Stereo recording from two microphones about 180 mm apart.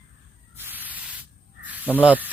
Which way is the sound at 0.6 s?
10° right (ahead or behind).